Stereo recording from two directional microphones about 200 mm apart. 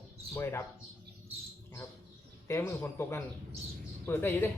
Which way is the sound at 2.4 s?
15° left (ahead or behind).